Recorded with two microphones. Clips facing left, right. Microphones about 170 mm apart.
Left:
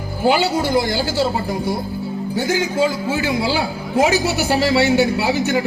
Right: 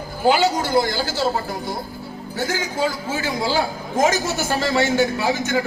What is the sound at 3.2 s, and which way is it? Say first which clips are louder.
A man's voice: even; 15° left (ahead or behind).